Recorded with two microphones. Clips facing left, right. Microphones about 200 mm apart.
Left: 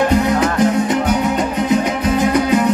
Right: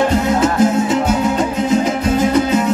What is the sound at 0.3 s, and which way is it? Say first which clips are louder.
Music: right 1 dB; 25° right (ahead or behind).